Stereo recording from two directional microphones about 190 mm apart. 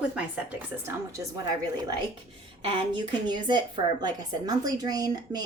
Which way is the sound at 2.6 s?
25° right (ahead or behind).